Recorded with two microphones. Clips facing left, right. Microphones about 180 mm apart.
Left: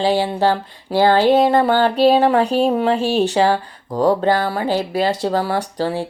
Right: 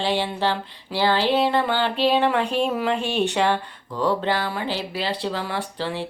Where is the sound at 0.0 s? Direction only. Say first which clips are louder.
Left 6 dB; 40° left (ahead or behind).